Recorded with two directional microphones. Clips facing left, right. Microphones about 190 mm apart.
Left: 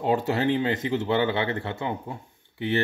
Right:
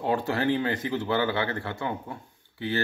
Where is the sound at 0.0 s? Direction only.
25° left (ahead or behind).